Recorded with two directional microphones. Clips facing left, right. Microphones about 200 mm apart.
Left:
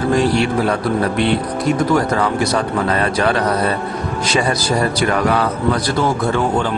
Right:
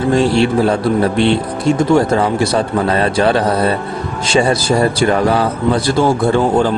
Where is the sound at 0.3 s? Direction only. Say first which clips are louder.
Right 4 dB; 30° right (ahead or behind).